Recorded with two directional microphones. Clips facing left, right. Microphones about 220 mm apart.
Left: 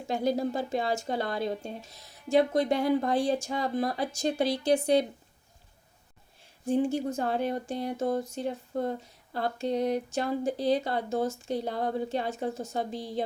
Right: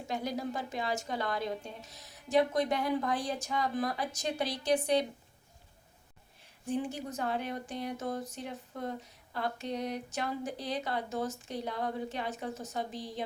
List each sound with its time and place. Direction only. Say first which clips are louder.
0.1 s speech: left 7 dB; 30° left (ahead or behind)
6.7 s speech: left 8 dB; 30° left (ahead or behind)